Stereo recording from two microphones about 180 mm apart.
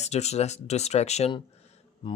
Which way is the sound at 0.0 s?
35° left (ahead or behind).